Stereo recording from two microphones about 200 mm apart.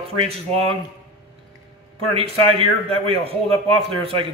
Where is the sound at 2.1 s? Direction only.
30° right (ahead or behind).